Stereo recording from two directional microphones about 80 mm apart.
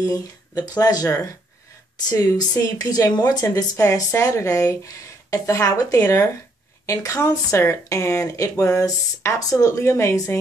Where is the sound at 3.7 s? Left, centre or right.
Left.